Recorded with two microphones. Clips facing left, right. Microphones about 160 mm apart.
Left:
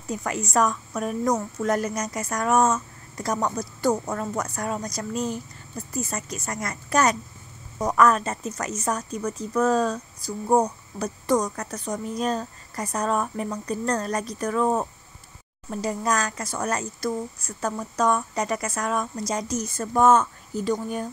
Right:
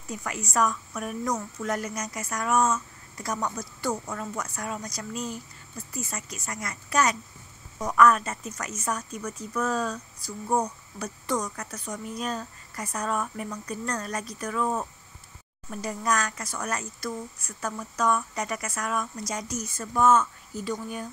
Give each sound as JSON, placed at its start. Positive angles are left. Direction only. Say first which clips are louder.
{"t": 0.1, "sound": "a woman's voice", "louder": "left 5 dB", "side_deg": 40}
{"t": 15.7, "sound": "a woman's voice", "louder": "left 3 dB", "side_deg": 30}